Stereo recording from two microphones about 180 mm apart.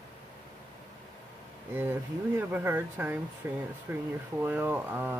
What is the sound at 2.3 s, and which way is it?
Speech, 10° right (ahead or behind).